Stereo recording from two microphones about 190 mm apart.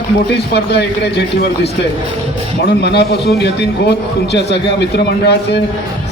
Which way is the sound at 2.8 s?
60° left (ahead or behind).